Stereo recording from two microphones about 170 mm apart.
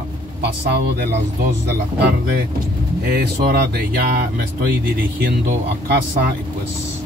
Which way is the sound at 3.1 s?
65° right (ahead or behind).